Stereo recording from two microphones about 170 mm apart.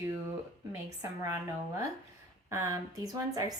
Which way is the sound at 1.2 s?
15° right (ahead or behind).